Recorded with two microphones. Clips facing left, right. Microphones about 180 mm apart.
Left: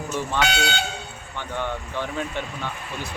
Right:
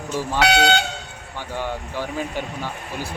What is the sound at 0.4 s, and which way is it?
Speech, 70° right (ahead or behind).